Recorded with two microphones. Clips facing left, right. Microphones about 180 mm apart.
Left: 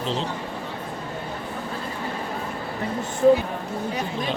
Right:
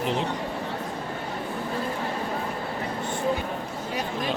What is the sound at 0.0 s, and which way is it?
Speech, 15° right (ahead or behind).